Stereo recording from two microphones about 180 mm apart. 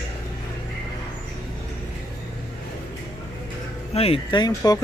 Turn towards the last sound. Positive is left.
turn(degrees=20)  # may be behind; listen again after turning